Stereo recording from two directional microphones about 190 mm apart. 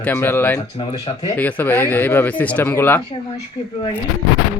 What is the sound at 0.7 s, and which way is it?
Speech, 30° left (ahead or behind).